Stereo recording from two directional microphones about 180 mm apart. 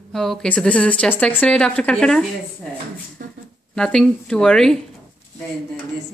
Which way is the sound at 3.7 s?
5° left (ahead or behind).